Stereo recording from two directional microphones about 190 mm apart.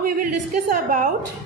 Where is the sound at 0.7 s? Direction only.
45° right (ahead or behind).